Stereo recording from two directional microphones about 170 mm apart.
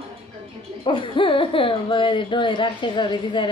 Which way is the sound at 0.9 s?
30° left (ahead or behind).